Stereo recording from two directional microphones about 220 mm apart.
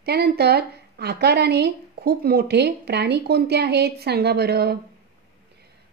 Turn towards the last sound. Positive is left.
turn(degrees=-45)  # may be behind; listen again after turning